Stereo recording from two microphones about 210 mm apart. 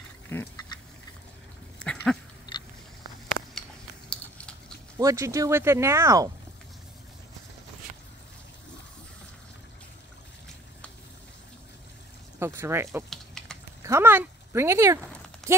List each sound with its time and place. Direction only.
0.3 s duck: 10° left (ahead or behind)
1.8 s dog: 5° left (ahead or behind)
2.5 s biting: 20° left (ahead or behind)
4.1 s biting: 5° left (ahead or behind)
4.9 s speech: 15° right (ahead or behind)
12.4 s speech: 10° right (ahead or behind)
13.1 s typing: centre (ahead or behind)
13.8 s speech: 10° right (ahead or behind)